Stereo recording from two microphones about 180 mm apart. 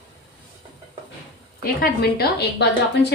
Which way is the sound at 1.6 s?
55° left (ahead or behind).